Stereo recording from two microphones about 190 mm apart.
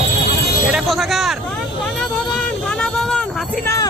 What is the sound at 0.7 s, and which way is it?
Music, centre (ahead or behind).